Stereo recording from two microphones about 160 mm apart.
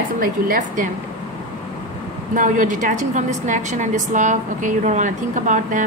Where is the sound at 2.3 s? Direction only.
55° right (ahead or behind).